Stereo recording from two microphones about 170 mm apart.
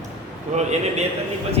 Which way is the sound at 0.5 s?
40° right (ahead or behind).